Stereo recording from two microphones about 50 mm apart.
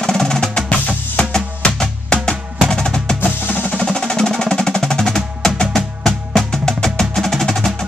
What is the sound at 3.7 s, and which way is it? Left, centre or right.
Music, centre.